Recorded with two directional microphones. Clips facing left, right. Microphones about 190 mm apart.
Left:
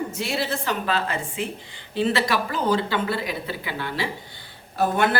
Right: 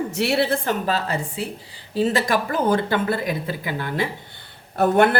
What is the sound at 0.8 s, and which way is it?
A woman's voice, 40° right (ahead or behind).